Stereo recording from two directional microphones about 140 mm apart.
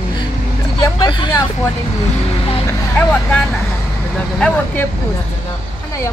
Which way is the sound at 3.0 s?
10° left (ahead or behind).